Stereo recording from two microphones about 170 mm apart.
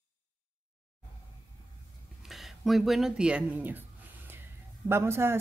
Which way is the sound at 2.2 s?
Centre (ahead or behind).